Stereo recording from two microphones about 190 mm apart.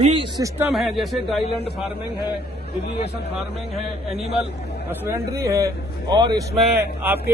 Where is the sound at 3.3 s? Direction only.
30° right (ahead or behind).